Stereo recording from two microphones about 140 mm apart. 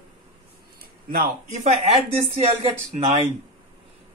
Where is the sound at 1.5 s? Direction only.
50° right (ahead or behind).